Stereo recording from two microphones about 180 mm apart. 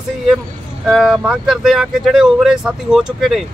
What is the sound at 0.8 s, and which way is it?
Speech, centre (ahead or behind).